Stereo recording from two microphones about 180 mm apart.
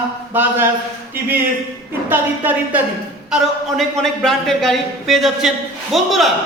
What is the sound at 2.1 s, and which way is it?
Speech, 10° right (ahead or behind).